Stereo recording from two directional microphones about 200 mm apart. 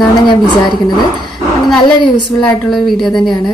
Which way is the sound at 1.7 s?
Centre (ahead or behind).